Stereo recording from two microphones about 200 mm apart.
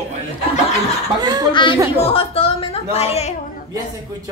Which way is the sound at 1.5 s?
25° left (ahead or behind).